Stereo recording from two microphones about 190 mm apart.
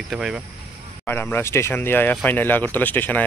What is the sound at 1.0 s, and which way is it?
Speech, 10° left (ahead or behind).